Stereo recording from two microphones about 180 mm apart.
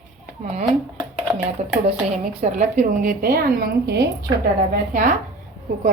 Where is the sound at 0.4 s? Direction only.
40° right (ahead or behind); by 4.3 s 60° right (ahead or behind).